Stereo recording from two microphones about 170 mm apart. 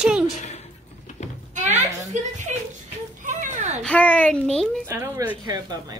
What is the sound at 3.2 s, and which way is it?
Children playing, 45° right (ahead or behind).